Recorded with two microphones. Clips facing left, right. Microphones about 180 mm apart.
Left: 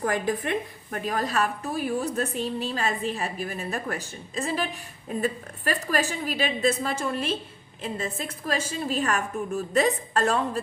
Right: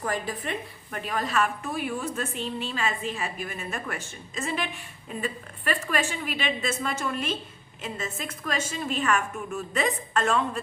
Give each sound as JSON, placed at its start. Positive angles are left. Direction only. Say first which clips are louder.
{"t": 0.0, "sound": "a woman's voice", "louder": "left 4 dB", "side_deg": 50}